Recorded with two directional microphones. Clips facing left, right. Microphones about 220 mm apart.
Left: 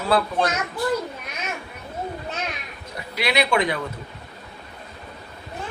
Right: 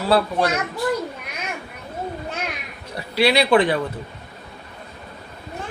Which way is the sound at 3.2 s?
30° right (ahead or behind).